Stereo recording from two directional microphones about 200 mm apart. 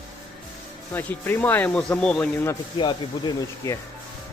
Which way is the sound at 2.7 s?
25° left (ahead or behind).